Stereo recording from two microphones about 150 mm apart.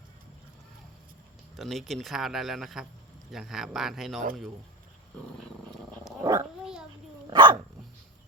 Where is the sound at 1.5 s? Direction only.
Centre (ahead or behind).